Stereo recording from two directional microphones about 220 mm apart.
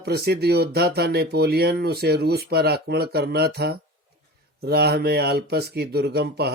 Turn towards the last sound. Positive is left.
turn(degrees=-45)  # may be behind; listen again after turning